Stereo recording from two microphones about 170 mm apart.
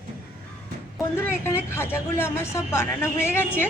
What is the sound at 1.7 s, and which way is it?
Speech, 15° left (ahead or behind).